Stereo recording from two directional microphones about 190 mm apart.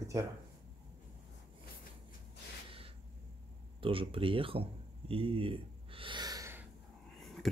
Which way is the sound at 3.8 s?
30° right (ahead or behind).